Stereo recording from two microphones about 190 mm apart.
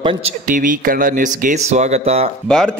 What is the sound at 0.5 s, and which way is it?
Speech, 45° right (ahead or behind).